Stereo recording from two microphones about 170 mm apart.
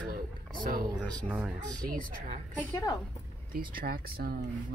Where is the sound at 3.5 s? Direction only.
60° right (ahead or behind).